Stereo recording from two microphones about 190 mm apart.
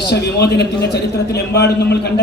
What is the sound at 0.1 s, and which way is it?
A man's voice, 60° left (ahead or behind).